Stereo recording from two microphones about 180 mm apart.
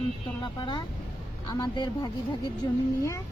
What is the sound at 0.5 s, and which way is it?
Speech, 25° left (ahead or behind).